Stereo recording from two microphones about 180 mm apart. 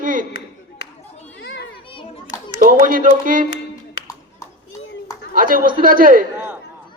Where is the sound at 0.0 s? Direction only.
50° right (ahead or behind).